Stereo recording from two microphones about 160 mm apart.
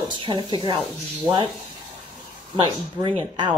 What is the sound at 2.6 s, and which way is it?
Speech, 30° right (ahead or behind).